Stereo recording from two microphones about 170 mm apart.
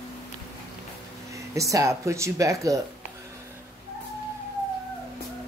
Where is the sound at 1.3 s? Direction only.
20° right (ahead or behind).